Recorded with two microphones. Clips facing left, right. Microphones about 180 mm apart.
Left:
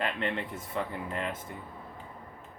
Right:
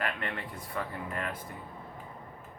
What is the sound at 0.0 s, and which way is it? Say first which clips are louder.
Speech: left 3 dB; 25° left (ahead or behind).